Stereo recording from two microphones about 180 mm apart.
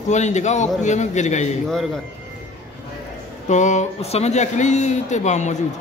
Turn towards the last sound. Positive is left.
turn(degrees=40)  # may be behind; listen again after turning